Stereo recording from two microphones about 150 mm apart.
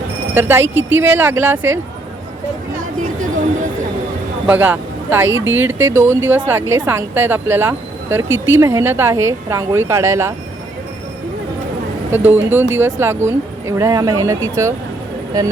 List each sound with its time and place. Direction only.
0.3 s speech: 15° right (ahead or behind)
4.4 s speech: 10° right (ahead or behind)
12.1 s speech: 15° right (ahead or behind)